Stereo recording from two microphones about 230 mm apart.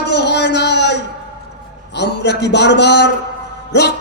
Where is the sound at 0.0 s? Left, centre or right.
Left.